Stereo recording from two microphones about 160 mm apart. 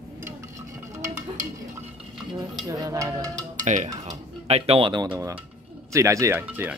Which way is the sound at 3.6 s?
50° right (ahead or behind).